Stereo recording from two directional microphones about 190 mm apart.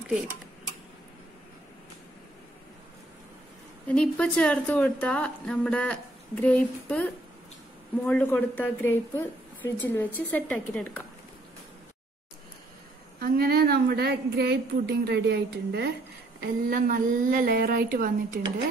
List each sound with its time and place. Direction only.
3.8 s a woman's voice: 5° left (ahead or behind)
13.2 s a woman's voice: 55° right (ahead or behind)
16.3 s a woman's voice: 45° right (ahead or behind)